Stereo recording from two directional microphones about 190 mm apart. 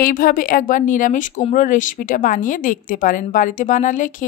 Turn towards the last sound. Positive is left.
turn(degrees=40)  # may be behind; listen again after turning